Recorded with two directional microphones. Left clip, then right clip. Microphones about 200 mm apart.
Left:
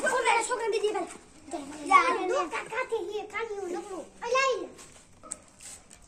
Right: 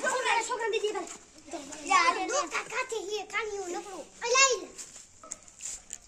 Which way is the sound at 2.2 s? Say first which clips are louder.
Left 2 dB; 55° right (ahead or behind).